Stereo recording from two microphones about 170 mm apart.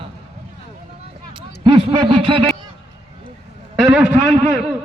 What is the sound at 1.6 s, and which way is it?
Speech, 30° right (ahead or behind).